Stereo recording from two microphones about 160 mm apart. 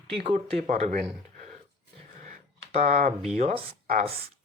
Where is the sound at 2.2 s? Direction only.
50° right (ahead or behind).